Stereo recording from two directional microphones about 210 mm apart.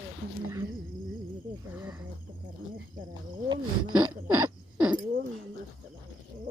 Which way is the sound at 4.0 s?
20° right (ahead or behind).